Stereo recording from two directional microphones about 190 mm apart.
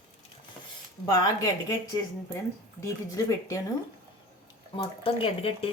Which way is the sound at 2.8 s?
15° left (ahead or behind).